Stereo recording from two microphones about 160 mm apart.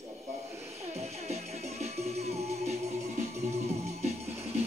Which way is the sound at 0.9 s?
40° right (ahead or behind).